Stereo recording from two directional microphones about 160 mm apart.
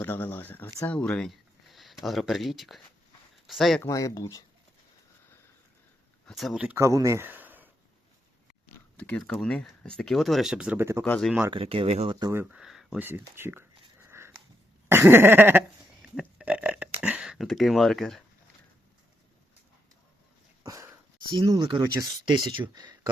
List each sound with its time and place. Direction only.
0.0 s speech: 15° left (ahead or behind)
3.8 s speech: 20° left (ahead or behind)
6.2 s speech: centre (ahead or behind)
9.0 s speech: 5° left (ahead or behind); by 11.0 s 15° right (ahead or behind)
11.0 s speech: 10° left (ahead or behind)
11.3 s speech: 10° right (ahead or behind)
11.5 s speech: 35° right (ahead or behind)
12.2 s speech: 15° right (ahead or behind)
12.5 s a sound: centre (ahead or behind)
13.1 s a sound: 15° right (ahead or behind); by 18.2 s centre (ahead or behind)
20.7 s a sound: 20° right (ahead or behind)
21.3 s speech: 25° right (ahead or behind)